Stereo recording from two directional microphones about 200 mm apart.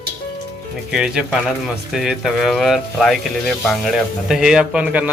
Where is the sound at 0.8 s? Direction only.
5° right (ahead or behind).